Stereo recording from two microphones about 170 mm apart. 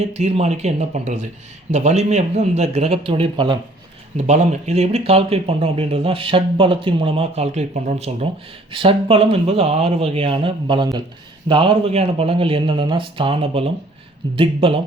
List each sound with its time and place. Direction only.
0.0 s speech: 40° right (ahead or behind)
4.2 s speech: 40° right (ahead or behind)